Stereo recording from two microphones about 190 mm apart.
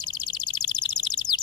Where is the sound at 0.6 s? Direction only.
20° left (ahead or behind).